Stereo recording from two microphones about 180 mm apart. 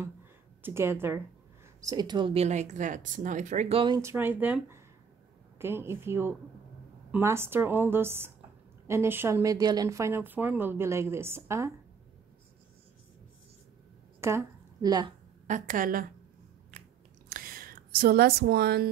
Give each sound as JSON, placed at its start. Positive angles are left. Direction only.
{"t": 0.6, "sound": "speech", "side_deg": -10}
{"t": 4.0, "sound": "speech", "side_deg": -15}
{"t": 14.2, "sound": "a woman's voice", "side_deg": -20}
{"t": 15.4, "sound": "a woman's voice", "side_deg": -45}
{"t": 17.3, "sound": "a sound", "side_deg": -55}